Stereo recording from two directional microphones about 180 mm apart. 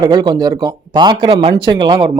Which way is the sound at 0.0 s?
25° right (ahead or behind).